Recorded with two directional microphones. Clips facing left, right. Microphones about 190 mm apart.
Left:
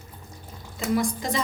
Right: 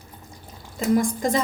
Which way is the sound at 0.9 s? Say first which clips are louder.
Right 4 dB; 50° right (ahead or behind).